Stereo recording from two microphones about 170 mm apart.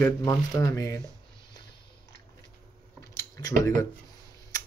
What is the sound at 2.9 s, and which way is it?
Scissors, 20° left (ahead or behind).